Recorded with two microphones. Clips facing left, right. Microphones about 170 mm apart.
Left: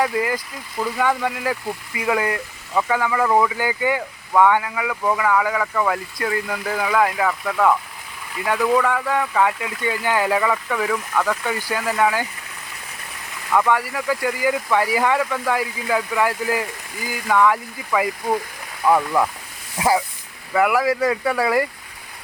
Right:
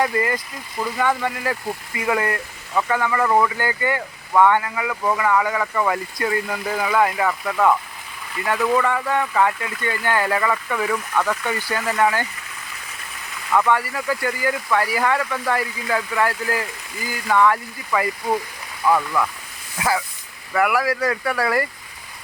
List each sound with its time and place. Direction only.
0.0 s speech: 5° left (ahead or behind)
13.5 s speech: 5° left (ahead or behind)
20.5 s speech: 20° left (ahead or behind)